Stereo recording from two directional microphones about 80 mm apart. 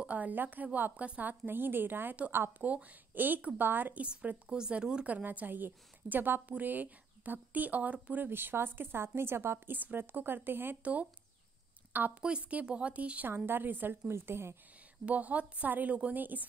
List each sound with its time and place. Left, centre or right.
0.0 s speech: centre
12.2 s a woman's voice: centre; by 14.6 s right
15.0 s speech: centre